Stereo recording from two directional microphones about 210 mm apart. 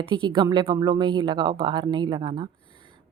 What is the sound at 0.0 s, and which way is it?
Speech, 20° right (ahead or behind).